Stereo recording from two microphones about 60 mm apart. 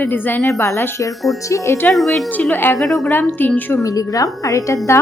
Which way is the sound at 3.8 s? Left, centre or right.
Left.